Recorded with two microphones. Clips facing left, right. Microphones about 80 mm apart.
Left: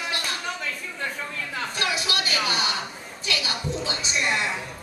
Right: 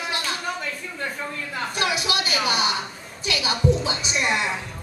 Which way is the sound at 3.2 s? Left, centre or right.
Centre.